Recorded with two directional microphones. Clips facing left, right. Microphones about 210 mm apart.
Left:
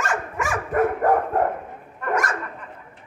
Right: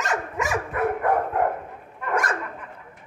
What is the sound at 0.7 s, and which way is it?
Dog, 40° left (ahead or behind).